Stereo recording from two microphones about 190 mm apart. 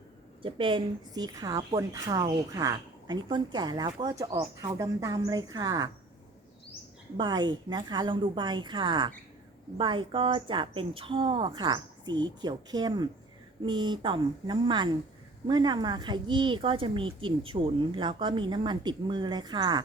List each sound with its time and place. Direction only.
0.4 s speech: 25° right (ahead or behind)
7.2 s speech: 20° right (ahead or behind)